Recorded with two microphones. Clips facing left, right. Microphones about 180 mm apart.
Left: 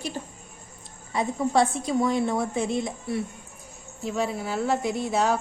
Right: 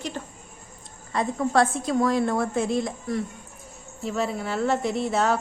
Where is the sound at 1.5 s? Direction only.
Centre (ahead or behind).